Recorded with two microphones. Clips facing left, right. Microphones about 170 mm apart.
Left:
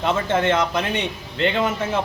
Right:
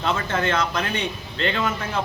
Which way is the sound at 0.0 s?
20° left (ahead or behind).